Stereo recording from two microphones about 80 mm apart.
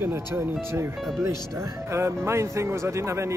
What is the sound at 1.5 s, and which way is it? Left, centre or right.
Speech, right.